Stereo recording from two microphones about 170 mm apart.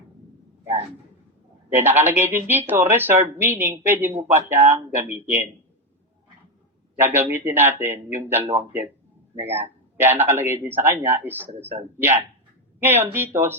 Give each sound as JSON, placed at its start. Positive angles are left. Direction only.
{"t": 1.7, "sound": "speech", "side_deg": -10}
{"t": 7.0, "sound": "speech", "side_deg": -10}